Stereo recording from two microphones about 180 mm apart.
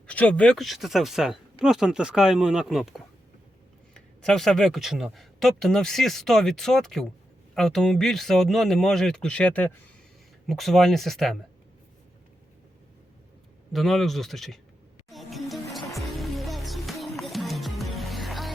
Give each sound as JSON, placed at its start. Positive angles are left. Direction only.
{"t": 0.1, "sound": "speech", "side_deg": 5}
{"t": 13.7, "sound": "speech", "side_deg": 0}
{"t": 15.1, "sound": "music", "side_deg": 0}